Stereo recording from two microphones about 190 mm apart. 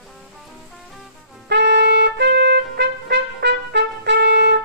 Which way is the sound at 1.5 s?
65° right (ahead or behind).